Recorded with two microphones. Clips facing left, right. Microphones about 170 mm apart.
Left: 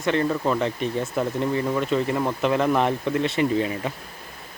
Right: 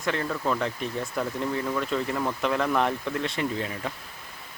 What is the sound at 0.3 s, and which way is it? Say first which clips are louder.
Speech: left 4 dB; 15° left (ahead or behind).